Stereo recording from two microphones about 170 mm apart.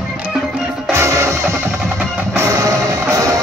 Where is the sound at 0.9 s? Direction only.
15° right (ahead or behind).